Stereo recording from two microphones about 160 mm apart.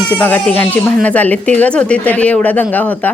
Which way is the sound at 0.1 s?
10° left (ahead or behind).